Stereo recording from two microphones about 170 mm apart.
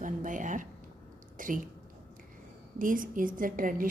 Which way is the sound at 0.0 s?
50° right (ahead or behind).